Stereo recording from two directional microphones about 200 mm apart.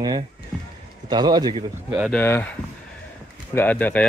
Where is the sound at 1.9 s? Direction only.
5° right (ahead or behind).